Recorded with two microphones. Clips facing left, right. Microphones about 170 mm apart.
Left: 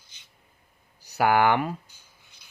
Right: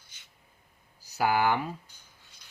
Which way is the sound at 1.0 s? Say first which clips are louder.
Left 5 dB; 65° left (ahead or behind).